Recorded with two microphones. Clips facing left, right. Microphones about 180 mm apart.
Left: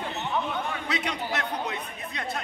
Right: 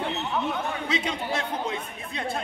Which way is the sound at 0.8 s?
25° right (ahead or behind).